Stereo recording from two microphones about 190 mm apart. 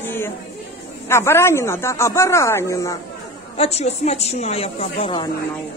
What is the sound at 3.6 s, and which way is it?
A woman's voice, 35° left (ahead or behind).